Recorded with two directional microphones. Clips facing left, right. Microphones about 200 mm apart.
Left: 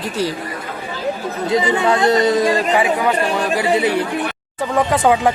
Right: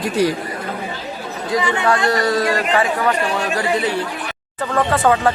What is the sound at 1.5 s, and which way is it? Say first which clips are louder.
A man's voice: left 2 dB; 20° left (ahead or behind).